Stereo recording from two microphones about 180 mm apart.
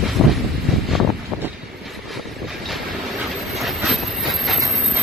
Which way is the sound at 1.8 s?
Centre (ahead or behind).